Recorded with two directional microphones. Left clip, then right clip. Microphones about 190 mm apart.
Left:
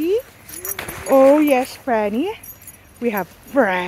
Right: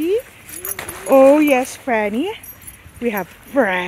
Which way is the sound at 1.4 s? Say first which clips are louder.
Right 1 dB; centre (ahead or behind).